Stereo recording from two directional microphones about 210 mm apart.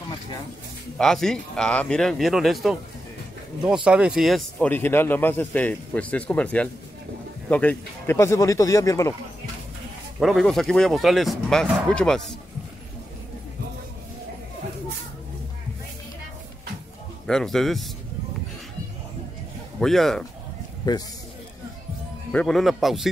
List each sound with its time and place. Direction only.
0.9 s speech: centre (ahead or behind)
10.2 s speech: centre (ahead or behind)
17.3 s speech: centre (ahead or behind)
19.8 s speech: centre (ahead or behind)
20.9 s a man's voice: 20° left (ahead or behind)
22.3 s speech: 5° left (ahead or behind)